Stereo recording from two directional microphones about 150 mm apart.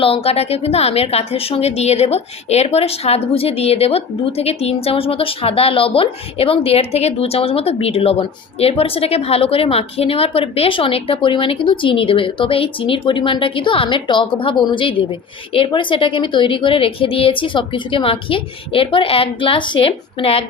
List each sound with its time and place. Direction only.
0.0 s a woman's voice: 40° left (ahead or behind)